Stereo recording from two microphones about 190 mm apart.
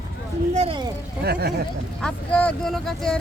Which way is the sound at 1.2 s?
55° right (ahead or behind).